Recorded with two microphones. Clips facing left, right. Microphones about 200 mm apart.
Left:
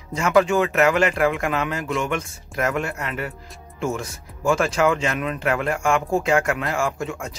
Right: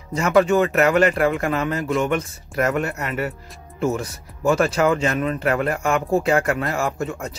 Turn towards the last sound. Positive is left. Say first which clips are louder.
# right 1 dB
turn(degrees=0)  # may be behind; listen again after turning